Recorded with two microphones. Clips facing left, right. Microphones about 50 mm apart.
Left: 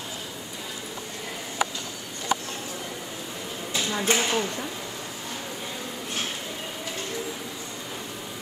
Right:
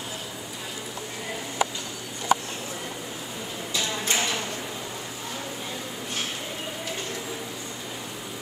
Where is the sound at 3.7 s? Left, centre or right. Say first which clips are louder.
Left 3 dB; centre.